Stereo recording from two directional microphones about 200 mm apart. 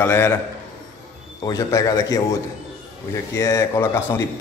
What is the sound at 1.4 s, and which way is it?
Speech, 15° left (ahead or behind).